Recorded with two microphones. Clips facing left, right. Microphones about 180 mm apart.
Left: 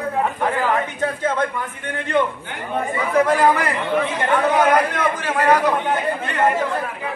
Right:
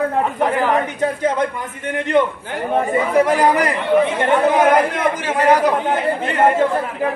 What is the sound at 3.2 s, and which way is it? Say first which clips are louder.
A man's voice: left 1 dB; 15° right (ahead or behind).